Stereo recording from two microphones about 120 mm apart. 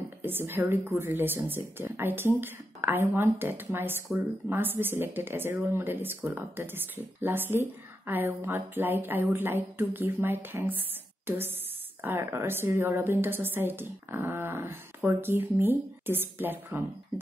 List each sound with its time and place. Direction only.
0.2 s a woman's voice: 15° right (ahead or behind)